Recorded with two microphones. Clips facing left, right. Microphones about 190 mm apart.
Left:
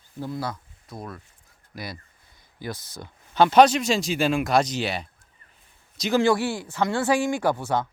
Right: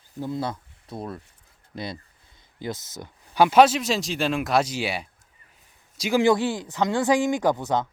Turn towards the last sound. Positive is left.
turn(degrees=-20)  # may be behind; listen again after turning